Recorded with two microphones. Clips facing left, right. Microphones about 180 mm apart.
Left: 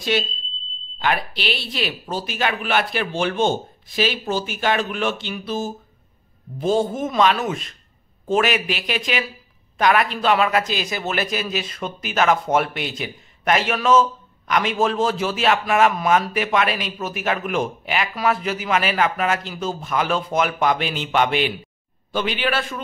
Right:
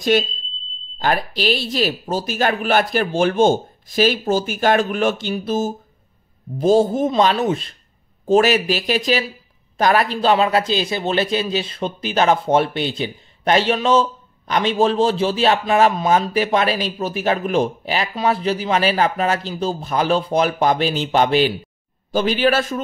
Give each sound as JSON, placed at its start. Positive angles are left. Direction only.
{"t": 0.1, "sound": "a man's voice", "side_deg": -45}